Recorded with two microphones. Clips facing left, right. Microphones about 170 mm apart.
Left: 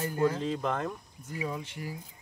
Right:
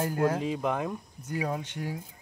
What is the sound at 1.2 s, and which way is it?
Speech, 75° right (ahead or behind).